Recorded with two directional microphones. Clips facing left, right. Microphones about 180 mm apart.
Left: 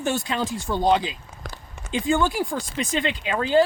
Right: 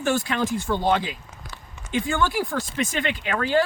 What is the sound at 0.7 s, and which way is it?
Speech, 20° left (ahead or behind).